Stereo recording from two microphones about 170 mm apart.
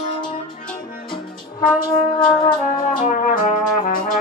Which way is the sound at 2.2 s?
25° left (ahead or behind).